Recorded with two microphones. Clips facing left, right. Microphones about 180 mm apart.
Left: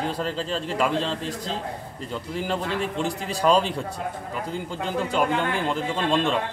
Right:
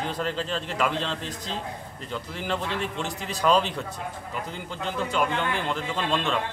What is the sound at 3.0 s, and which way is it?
Speech, 35° left (ahead or behind).